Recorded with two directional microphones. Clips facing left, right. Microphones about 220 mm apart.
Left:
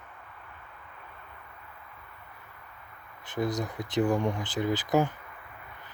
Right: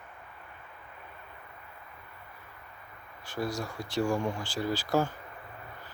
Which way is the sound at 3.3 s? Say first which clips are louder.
Left 3 dB; 20° left (ahead or behind).